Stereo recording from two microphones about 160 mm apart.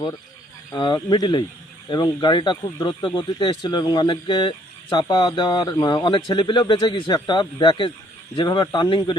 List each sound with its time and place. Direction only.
0.7 s speech: 25° left (ahead or behind)